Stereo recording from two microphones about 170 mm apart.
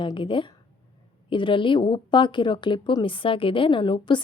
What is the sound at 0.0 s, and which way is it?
A woman's voice, 30° left (ahead or behind).